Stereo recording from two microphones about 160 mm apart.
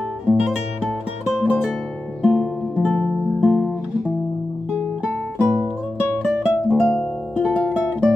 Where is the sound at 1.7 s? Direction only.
Centre (ahead or behind).